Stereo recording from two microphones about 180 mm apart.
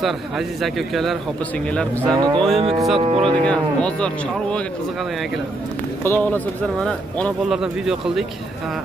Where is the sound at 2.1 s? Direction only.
20° right (ahead or behind).